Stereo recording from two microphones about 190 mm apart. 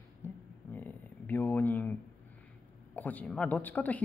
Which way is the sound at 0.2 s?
10° left (ahead or behind).